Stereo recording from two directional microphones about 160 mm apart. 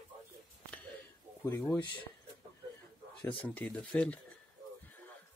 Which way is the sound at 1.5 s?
15° left (ahead or behind).